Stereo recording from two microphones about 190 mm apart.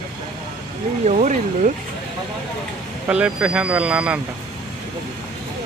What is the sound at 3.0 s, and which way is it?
Speech, 5° right (ahead or behind).